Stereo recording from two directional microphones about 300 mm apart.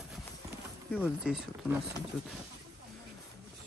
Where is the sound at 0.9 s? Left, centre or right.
Centre.